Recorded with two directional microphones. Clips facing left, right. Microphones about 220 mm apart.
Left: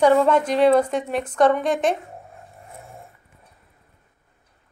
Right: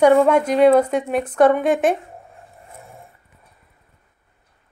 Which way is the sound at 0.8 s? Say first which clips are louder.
Right 3 dB; 5° right (ahead or behind).